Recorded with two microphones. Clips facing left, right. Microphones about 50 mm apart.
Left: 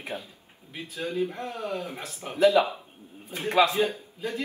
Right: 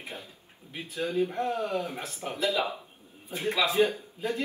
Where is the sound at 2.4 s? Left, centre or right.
Left.